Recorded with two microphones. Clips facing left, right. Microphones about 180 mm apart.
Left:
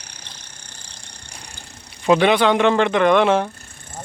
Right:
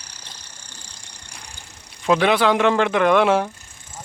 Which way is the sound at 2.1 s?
Centre (ahead or behind).